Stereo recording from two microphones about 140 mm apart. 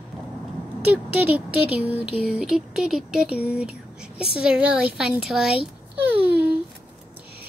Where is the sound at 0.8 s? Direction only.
10° right (ahead or behind).